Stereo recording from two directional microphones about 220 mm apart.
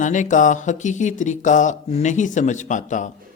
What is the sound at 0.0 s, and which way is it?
Speech, 35° left (ahead or behind).